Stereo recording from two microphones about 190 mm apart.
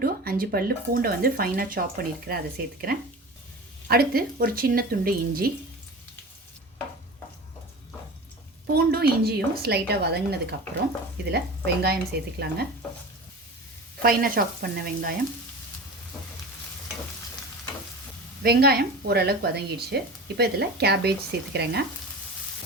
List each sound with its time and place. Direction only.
0.0 s speech: 50° right (ahead or behind)
8.7 s speech: 55° right (ahead or behind)
14.0 s speech: 50° right (ahead or behind)
18.4 s speech: 55° right (ahead or behind)